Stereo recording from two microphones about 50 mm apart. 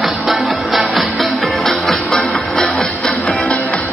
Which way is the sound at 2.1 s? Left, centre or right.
Centre.